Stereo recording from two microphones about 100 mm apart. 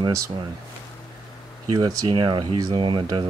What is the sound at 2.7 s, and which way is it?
Speech, 60° right (ahead or behind).